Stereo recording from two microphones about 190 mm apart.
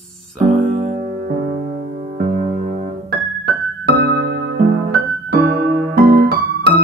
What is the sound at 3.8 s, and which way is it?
Music, 60° right (ahead or behind).